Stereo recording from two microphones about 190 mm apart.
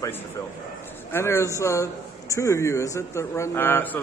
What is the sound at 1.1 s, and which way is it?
A man's voice, 15° left (ahead or behind).